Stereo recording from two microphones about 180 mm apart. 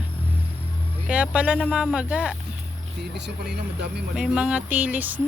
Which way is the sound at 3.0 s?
70° right (ahead or behind).